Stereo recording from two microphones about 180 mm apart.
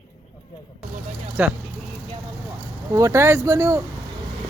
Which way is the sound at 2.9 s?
15° right (ahead or behind).